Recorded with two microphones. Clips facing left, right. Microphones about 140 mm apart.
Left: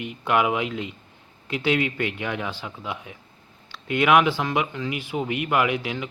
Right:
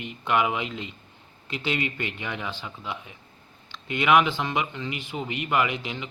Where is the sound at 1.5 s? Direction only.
60° left (ahead or behind).